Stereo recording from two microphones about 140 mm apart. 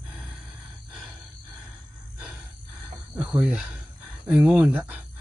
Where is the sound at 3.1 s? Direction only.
10° right (ahead or behind).